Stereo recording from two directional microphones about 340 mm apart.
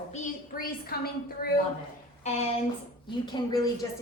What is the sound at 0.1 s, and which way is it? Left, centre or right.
Speech, left.